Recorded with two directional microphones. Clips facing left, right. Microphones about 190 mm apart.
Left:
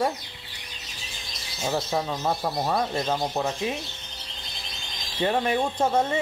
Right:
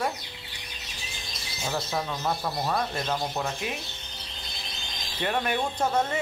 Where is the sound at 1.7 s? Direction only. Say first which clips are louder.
Left 4 dB; 20° left (ahead or behind).